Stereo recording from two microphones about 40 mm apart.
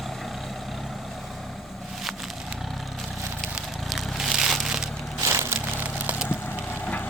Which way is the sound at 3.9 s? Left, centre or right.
Centre.